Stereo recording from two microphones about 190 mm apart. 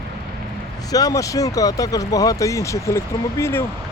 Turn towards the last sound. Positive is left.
turn(degrees=15)  # may be behind; listen again after turning